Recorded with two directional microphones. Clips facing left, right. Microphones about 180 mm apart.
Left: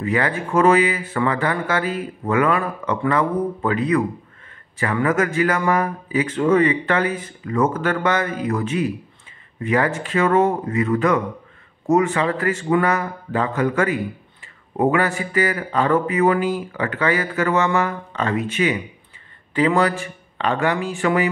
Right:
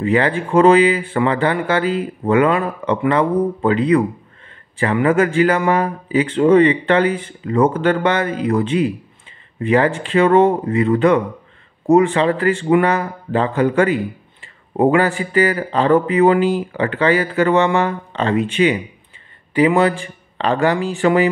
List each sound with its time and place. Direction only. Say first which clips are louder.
0.0 s speech: right 5 dB; 30° right (ahead or behind)
5.0 s speech: right 5 dB; 30° right (ahead or behind)
19.5 s speech: right 4 dB; 15° right (ahead or behind)
20.0 s speech: right 2 dB; 30° right (ahead or behind)